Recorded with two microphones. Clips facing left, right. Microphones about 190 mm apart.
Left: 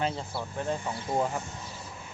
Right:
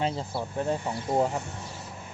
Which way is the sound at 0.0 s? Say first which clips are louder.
Right 2 dB; 30° right (ahead or behind).